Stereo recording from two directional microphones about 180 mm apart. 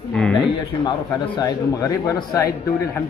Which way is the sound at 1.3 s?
20° left (ahead or behind).